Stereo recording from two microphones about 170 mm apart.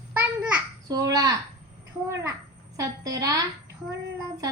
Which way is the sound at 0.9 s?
20° right (ahead or behind).